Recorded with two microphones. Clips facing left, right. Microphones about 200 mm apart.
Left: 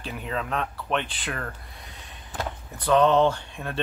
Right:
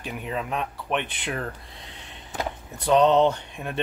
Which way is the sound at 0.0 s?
10° right (ahead or behind).